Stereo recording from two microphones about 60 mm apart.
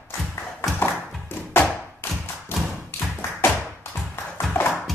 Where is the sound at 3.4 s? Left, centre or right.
Left.